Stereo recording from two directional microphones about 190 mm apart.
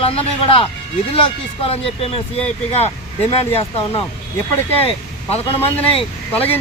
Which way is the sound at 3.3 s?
30° left (ahead or behind).